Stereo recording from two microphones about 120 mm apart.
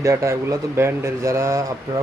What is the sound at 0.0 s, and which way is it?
Speech, 25° right (ahead or behind).